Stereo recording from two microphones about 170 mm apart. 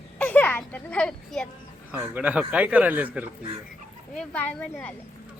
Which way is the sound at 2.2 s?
10° right (ahead or behind).